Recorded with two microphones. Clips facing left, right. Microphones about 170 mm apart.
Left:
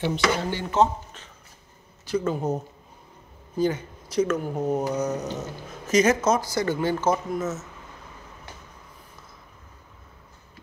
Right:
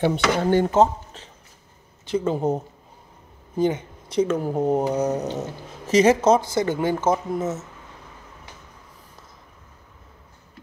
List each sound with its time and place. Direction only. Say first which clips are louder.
0.0 s speech: right 4 dB; 50° right (ahead or behind)
2.0 s speech: right 3 dB; 25° right (ahead or behind)